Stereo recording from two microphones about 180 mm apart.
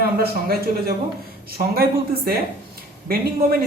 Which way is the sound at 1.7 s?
60° right (ahead or behind).